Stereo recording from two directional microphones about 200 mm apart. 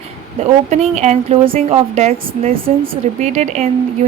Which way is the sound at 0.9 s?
35° right (ahead or behind).